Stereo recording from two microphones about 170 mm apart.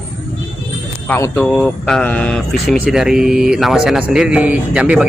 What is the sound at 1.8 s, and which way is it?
Speech, 5° left (ahead or behind).